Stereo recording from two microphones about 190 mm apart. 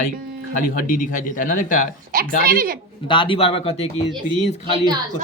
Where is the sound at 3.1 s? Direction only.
25° left (ahead or behind).